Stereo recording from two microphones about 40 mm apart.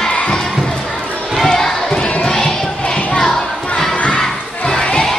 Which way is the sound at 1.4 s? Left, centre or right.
Centre.